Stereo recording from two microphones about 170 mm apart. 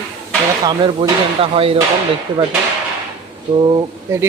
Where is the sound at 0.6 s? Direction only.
30° right (ahead or behind).